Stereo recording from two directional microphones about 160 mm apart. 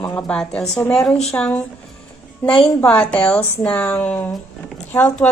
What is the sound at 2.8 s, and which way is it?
Speech, 5° left (ahead or behind).